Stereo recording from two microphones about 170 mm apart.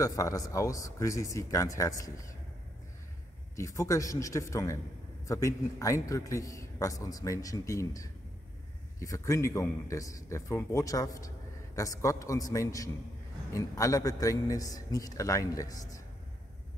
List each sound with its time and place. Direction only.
0.0 s a man's voice: 20° left (ahead or behind)
3.5 s a man's voice: 20° left (ahead or behind)